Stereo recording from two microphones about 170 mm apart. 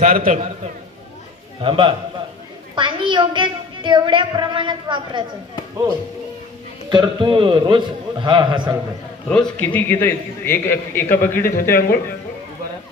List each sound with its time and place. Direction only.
0.0 s a man's voice: 55° right (ahead or behind)
1.6 s a woman's voice: 30° right (ahead or behind)
6.9 s a woman's voice: 25° right (ahead or behind)
9.3 s a man's voice: 10° left (ahead or behind)
11.4 s speech: 60° left (ahead or behind)